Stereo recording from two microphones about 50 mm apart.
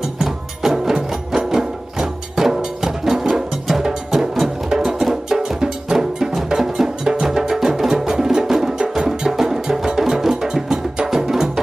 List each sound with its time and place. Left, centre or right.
0.2 s music: centre